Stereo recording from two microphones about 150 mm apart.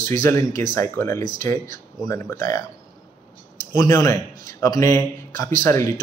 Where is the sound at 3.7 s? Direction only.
25° left (ahead or behind).